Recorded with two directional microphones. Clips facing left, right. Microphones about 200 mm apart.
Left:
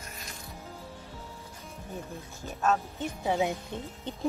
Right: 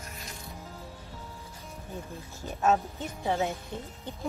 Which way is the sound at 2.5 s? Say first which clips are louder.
Right 2 dB; 15° right (ahead or behind).